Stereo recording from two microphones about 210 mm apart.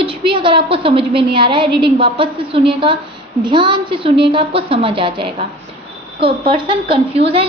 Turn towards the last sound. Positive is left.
turn(degrees=-25)  # may be behind; listen again after turning